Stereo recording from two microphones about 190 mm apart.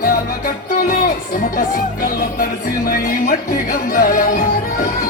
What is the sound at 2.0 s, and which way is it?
Music, 50° left (ahead or behind).